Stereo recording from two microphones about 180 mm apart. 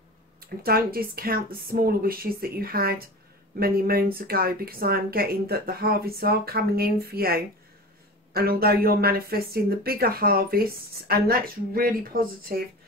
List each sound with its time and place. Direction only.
0.4 s speech: 55° right (ahead or behind)